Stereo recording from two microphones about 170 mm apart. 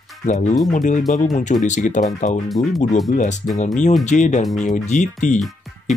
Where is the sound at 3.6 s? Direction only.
45° left (ahead or behind).